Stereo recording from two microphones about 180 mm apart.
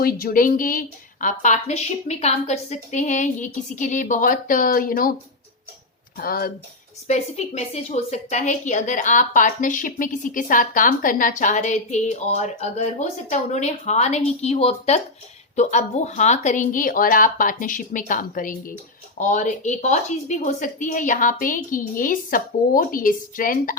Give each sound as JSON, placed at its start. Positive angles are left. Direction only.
{"t": 0.0, "sound": "a woman's voice", "side_deg": 55}
{"t": 6.1, "sound": "speech", "side_deg": 55}
{"t": 7.1, "sound": "a woman's voice", "side_deg": 40}